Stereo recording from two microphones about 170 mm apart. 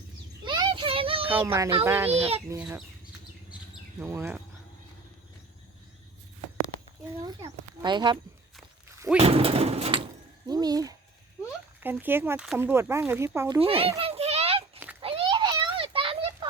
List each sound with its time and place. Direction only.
0.4 s child singing: 25° right (ahead or behind)
1.3 s speech: 15° right (ahead or behind)
2.1 s speech: 35° right (ahead or behind)
2.6 s speech: 5° right (ahead or behind)
4.0 s speech: 15° right (ahead or behind)
7.2 s a child's voice: 20° right (ahead or behind)
10.4 s a child's voice: 25° right (ahead or behind)
11.8 s speech: 10° right (ahead or behind)
13.6 s speech: 35° right (ahead or behind)
14.0 s a sound: 35° right (ahead or behind)
15.0 s children playing: 30° right (ahead or behind)